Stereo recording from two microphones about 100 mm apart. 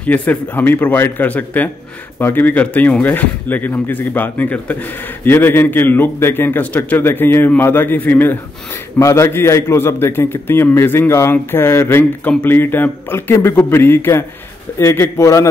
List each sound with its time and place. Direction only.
0.0 s a man's voice: 15° left (ahead or behind)